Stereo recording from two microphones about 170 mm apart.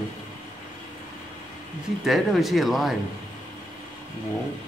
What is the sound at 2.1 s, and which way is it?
Speech, centre (ahead or behind).